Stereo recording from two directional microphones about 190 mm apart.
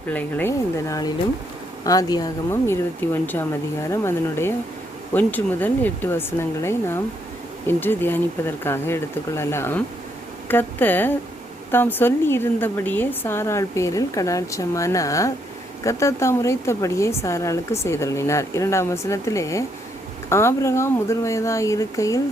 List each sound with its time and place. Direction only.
0.1 s a woman's voice: 10° left (ahead or behind)